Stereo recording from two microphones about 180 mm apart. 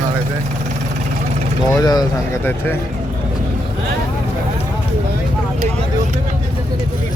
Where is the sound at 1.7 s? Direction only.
20° left (ahead or behind).